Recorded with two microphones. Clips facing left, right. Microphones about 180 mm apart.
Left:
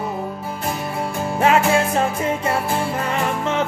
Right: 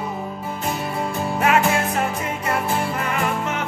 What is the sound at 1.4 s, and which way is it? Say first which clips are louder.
Music: left 3 dB; 30° left (ahead or behind).